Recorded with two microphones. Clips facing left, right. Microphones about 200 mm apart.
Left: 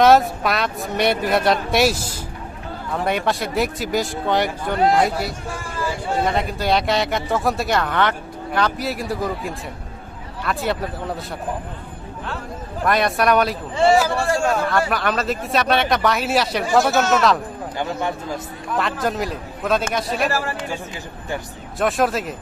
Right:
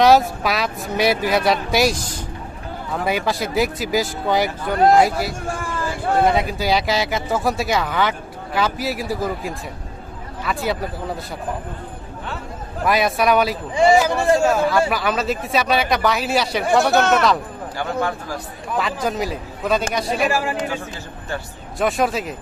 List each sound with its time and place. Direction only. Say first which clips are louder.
0.0 s speech: even; centre (ahead or behind)
5.9 s speech: right 3 dB; 55° right (ahead or behind)
6.2 s speech: right 3 dB; centre (ahead or behind)
12.8 s speech: right 1 dB; centre (ahead or behind)
13.7 s a man's voice: right 1 dB; 15° right (ahead or behind)
14.4 s speech: right 3 dB; centre (ahead or behind)
17.7 s speech: right 2 dB; 20° left (ahead or behind)
18.8 s speech: even; centre (ahead or behind)
20.2 s a man's voice: right 2 dB; 15° right (ahead or behind)
21.7 s speech: even; centre (ahead or behind)